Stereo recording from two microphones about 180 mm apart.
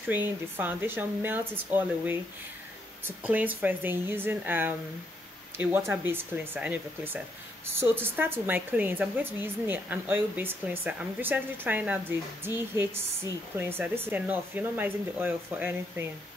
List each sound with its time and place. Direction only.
0.1 s speech: 10° right (ahead or behind)
3.3 s speech: 10° right (ahead or behind)